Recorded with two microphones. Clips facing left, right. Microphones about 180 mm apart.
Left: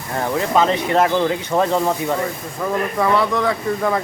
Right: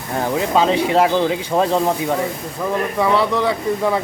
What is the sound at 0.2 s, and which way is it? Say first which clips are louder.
A man's voice: even; 15° right (ahead or behind).